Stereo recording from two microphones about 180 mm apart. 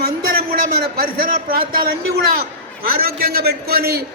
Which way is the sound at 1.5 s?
55° right (ahead or behind).